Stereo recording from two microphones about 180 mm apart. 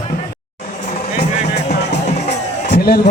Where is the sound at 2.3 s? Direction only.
65° left (ahead or behind).